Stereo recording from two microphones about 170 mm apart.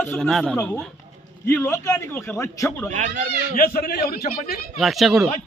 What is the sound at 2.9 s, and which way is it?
Speech, 45° right (ahead or behind).